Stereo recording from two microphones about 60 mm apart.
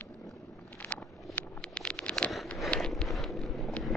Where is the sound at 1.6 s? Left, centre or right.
Centre.